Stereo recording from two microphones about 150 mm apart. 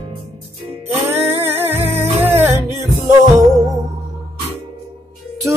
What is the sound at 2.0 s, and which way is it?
Music, 15° right (ahead or behind).